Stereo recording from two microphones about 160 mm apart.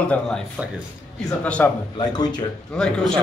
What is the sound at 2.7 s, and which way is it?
Speech, 5° left (ahead or behind).